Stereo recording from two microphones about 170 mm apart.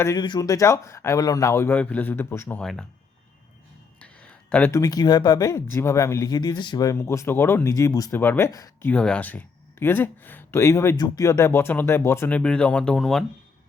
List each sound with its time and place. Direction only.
0.0 s speech: 20° left (ahead or behind); by 2.8 s 5° left (ahead or behind)
4.0 s a sound: 5° left (ahead or behind)
4.8 s speech: 25° left (ahead or behind)
8.9 s speech: 5° left (ahead or behind)